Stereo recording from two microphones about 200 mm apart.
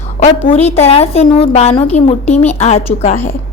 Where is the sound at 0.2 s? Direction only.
35° left (ahead or behind).